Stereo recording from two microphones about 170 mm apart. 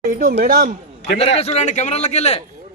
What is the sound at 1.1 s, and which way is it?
A man's voice, 35° left (ahead or behind).